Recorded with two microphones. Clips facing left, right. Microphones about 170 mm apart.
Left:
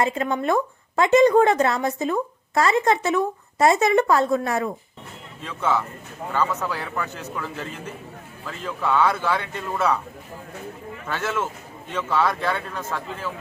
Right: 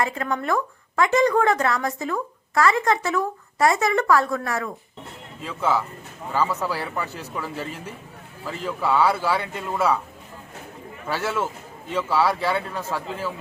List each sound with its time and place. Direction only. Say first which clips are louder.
0.0 s speech: left 3 dB; 20° left (ahead or behind)
5.4 s a man's voice: even; 5° right (ahead or behind)
8.4 s a man's voice: right 1 dB; 10° right (ahead or behind)
11.0 s a man's voice: right 1 dB; 10° right (ahead or behind)